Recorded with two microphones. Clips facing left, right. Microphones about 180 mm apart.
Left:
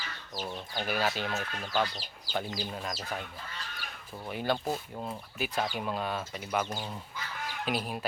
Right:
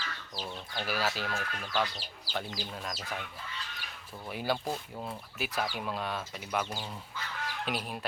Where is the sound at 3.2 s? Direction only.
45° left (ahead or behind).